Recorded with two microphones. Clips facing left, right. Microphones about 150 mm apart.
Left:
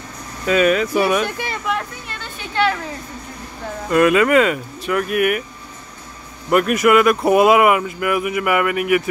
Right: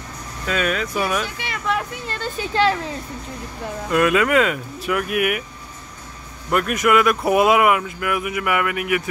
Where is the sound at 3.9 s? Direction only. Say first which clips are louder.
Left 4 dB; centre (ahead or behind).